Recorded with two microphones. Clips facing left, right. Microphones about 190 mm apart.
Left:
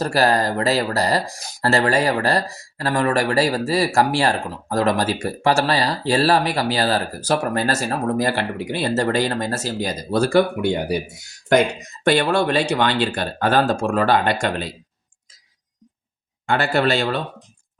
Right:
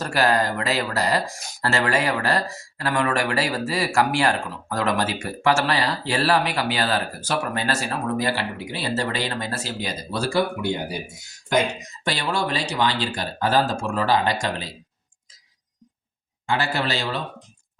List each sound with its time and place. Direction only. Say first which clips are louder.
0.0 s speech: left 3 dB; 35° left (ahead or behind); by 10.9 s 60° left (ahead or behind)
12.0 s speech: left 8 dB; 60° left (ahead or behind)
16.5 s speech: left 5 dB; 55° left (ahead or behind)